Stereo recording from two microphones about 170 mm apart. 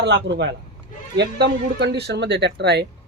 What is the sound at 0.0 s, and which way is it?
Speech, 90° right.